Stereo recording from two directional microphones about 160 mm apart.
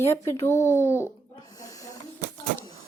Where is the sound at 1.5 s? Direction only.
20° left (ahead or behind).